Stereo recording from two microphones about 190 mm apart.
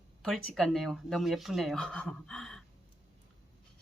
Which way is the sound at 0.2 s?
Centre (ahead or behind).